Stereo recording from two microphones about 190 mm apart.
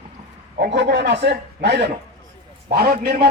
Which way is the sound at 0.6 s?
60° right (ahead or behind).